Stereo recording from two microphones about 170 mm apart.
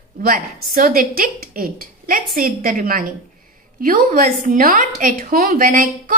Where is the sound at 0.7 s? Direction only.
55° right (ahead or behind).